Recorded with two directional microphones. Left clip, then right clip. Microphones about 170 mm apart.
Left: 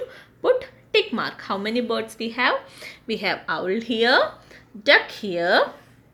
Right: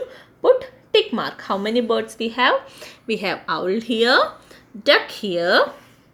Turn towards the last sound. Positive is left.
turn(degrees=-40)  # may be behind; listen again after turning